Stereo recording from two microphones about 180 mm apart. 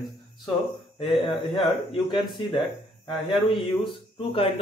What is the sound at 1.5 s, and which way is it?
Speech, 25° left (ahead or behind).